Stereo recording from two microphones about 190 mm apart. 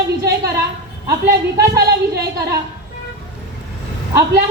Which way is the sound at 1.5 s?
55° right (ahead or behind).